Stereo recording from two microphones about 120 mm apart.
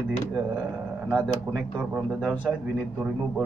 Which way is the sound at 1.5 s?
15° right (ahead or behind).